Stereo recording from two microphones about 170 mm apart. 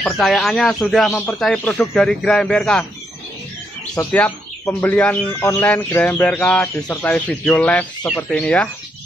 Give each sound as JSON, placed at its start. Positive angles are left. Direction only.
{"t": 0.0, "sound": "speech", "side_deg": 5}
{"t": 3.9, "sound": "speech", "side_deg": 10}